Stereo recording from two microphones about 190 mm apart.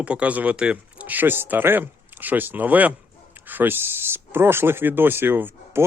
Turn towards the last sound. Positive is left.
turn(degrees=-10)  # may be behind; listen again after turning